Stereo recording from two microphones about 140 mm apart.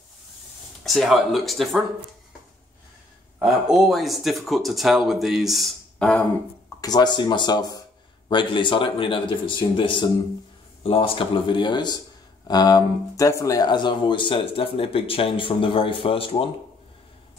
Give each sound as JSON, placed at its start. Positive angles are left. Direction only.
{"t": 0.8, "sound": "speech", "side_deg": 0}
{"t": 3.3, "sound": "speech", "side_deg": -5}
{"t": 6.8, "sound": "speech", "side_deg": 30}